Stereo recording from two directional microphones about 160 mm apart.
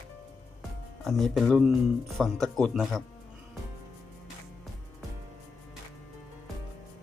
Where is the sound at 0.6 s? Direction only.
Centre (ahead or behind).